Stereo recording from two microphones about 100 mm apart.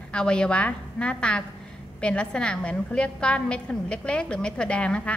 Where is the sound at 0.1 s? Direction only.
10° left (ahead or behind).